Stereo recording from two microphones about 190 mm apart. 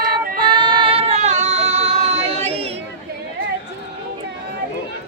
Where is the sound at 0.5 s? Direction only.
25° right (ahead or behind).